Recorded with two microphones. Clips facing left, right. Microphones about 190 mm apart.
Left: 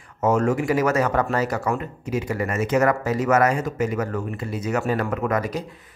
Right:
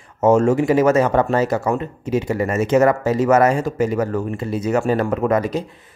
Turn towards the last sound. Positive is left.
turn(degrees=-25)  # may be behind; listen again after turning